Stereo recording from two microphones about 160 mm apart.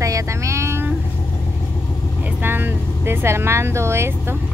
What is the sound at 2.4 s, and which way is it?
Speech, 15° right (ahead or behind).